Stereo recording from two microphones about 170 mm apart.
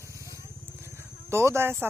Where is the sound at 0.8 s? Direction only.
15° right (ahead or behind).